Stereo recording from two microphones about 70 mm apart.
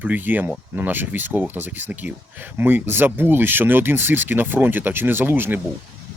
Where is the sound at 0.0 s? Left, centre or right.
Right.